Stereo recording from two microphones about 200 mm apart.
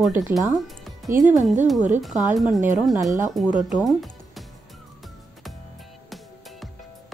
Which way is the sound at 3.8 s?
Centre (ahead or behind).